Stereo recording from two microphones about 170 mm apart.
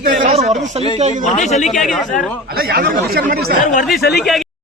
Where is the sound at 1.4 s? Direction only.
45° left (ahead or behind).